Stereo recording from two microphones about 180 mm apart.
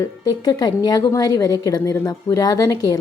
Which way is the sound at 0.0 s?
20° left (ahead or behind).